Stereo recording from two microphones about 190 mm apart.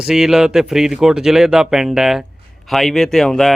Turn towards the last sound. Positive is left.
turn(degrees=0)  # may be behind; listen again after turning